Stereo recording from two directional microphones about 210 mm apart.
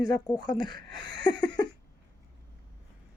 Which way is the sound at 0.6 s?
20° left (ahead or behind).